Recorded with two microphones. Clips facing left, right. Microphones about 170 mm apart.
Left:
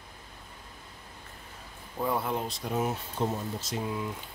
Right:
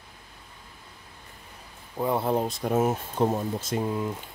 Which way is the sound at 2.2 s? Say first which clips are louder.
Right 7 dB; 35° right (ahead or behind).